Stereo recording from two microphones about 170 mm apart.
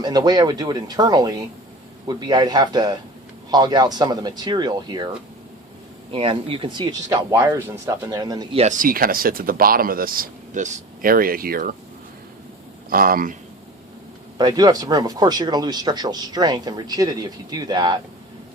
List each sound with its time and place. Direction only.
0.0 s speech: 25° right (ahead or behind)
6.1 s speech: 30° right (ahead or behind)
8.8 s speech: 60° right (ahead or behind)
12.9 s speech: 60° right (ahead or behind)
14.3 s speech: 25° right (ahead or behind)